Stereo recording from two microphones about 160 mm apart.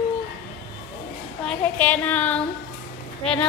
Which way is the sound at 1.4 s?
10° left (ahead or behind).